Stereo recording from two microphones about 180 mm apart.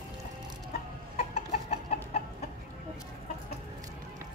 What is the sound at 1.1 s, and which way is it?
Chicken, 35° left (ahead or behind).